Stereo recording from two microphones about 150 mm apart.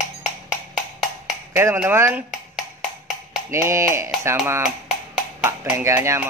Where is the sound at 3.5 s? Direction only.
20° right (ahead or behind).